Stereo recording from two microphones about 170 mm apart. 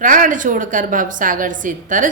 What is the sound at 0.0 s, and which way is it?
Mantra, 50° right (ahead or behind).